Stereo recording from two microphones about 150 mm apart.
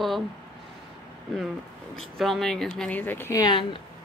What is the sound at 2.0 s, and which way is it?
Speech, centre (ahead or behind).